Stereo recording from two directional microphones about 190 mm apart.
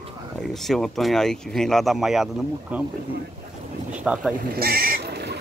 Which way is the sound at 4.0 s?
5° right (ahead or behind).